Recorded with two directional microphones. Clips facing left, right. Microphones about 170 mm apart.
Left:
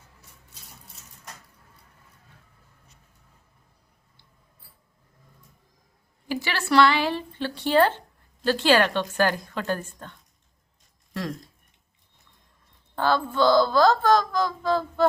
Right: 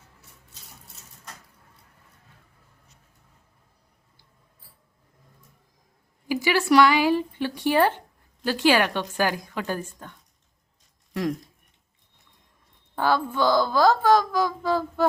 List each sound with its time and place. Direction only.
6.2 s speech: 10° right (ahead or behind)
13.0 s speech: 10° right (ahead or behind)